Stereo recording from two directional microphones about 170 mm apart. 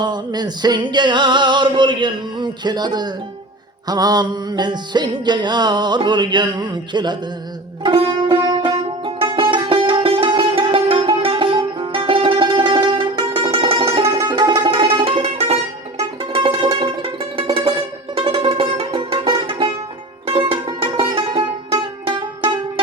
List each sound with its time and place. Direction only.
0.0 s music: 25° right (ahead or behind)